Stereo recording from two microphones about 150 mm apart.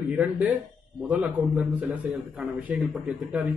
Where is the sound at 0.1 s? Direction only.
10° right (ahead or behind).